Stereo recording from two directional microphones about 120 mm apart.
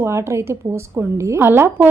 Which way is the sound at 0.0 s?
25° right (ahead or behind).